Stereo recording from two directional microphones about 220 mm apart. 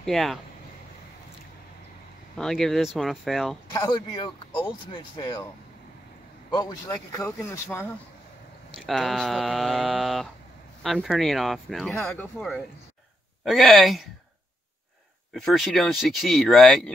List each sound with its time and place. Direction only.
0.0 s speech: centre (ahead or behind)
2.3 s speech: centre (ahead or behind)
3.7 s speech: 15° left (ahead or behind)
6.5 s speech: 20° left (ahead or behind)
8.7 s speech: centre (ahead or behind)
15.3 s speech: centre (ahead or behind)